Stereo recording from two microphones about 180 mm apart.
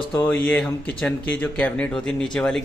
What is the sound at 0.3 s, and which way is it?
A man's voice, 10° left (ahead or behind).